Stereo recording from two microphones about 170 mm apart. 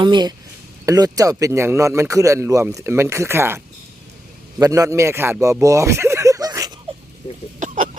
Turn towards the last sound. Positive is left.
turn(degrees=-50)  # may be behind; listen again after turning